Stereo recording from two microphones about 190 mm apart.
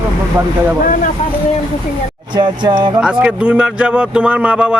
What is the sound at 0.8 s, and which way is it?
Speech, 45° left (ahead or behind).